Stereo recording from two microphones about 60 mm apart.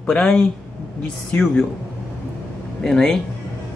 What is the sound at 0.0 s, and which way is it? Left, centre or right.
Speech, centre.